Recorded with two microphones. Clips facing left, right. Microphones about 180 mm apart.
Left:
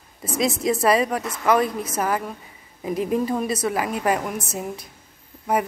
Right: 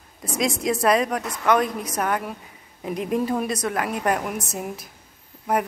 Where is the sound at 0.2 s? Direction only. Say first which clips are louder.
Left 2 dB; centre (ahead or behind).